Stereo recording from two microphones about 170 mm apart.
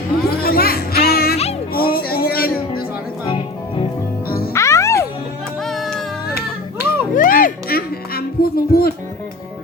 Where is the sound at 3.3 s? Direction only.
30° left (ahead or behind).